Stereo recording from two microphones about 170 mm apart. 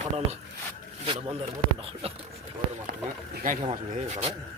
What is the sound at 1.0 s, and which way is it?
Speech, 35° right (ahead or behind).